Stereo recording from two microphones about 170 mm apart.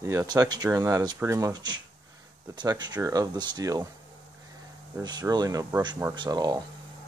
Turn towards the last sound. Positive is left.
turn(degrees=-20)  # may be behind; listen again after turning